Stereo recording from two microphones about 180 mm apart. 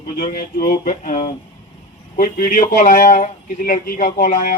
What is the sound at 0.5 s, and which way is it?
A man's voice, 55° left (ahead or behind).